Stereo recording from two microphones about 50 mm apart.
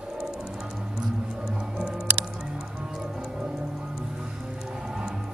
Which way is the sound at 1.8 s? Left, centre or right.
Centre.